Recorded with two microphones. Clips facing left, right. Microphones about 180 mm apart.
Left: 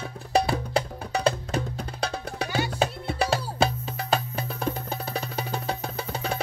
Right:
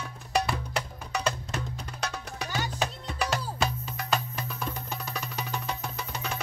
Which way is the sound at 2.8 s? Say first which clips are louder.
Left 5 dB; 30° left (ahead or behind).